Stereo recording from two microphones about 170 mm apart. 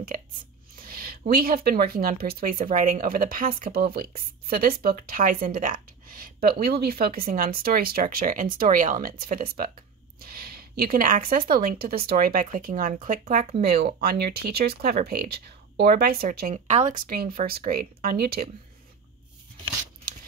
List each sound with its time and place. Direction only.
0.7 s a sound: 60° right (ahead or behind)
1.3 s speech: 65° right (ahead or behind)
13.7 s speech: 65° right (ahead or behind)